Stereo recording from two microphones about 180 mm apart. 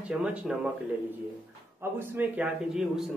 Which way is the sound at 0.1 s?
5° right (ahead or behind).